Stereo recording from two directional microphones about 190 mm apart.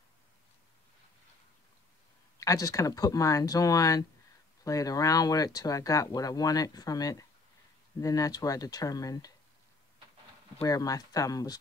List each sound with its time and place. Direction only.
2.3 s speech: 15° left (ahead or behind)
10.6 s speech: 20° left (ahead or behind)